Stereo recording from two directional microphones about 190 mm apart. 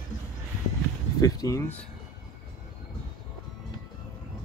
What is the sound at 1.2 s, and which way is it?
Speech, 15° left (ahead or behind).